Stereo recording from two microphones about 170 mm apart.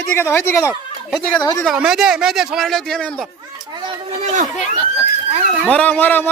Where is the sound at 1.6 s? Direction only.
5° right (ahead or behind).